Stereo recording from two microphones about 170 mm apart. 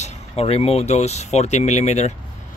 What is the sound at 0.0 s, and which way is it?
Speech, 35° left (ahead or behind).